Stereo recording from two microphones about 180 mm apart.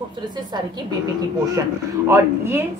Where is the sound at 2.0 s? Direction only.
15° right (ahead or behind).